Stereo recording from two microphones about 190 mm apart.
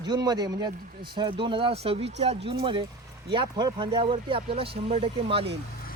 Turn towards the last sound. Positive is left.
turn(degrees=-30)  # may be behind; listen again after turning